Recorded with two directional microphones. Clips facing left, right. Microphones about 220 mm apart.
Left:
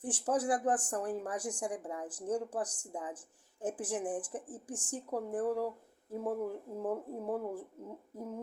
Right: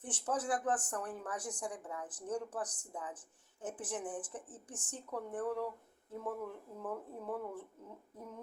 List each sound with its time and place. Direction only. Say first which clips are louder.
0.0 s speech: left 5 dB; 30° left (ahead or behind)